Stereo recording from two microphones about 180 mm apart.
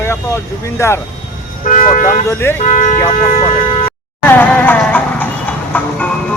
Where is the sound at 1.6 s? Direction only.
50° left (ahead or behind); by 3.9 s 30° left (ahead or behind).